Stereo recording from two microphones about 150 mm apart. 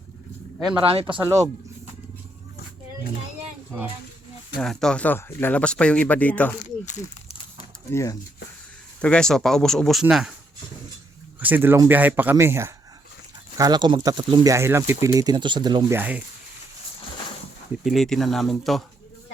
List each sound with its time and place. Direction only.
0.9 s speech: 35° right (ahead or behind)
4.6 s speech: 5° left (ahead or behind)
6.8 s speech: 50° left (ahead or behind)
7.9 s speech: 20° left (ahead or behind)
9.0 s speech: 5° left (ahead or behind)
11.3 s speech: 10° right (ahead or behind)
13.6 s speech: 30° right (ahead or behind)
15.9 s speech: 10° right (ahead or behind)
17.8 s speech: centre (ahead or behind)